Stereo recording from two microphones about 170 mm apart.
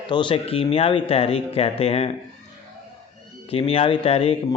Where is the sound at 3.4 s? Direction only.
35° left (ahead or behind).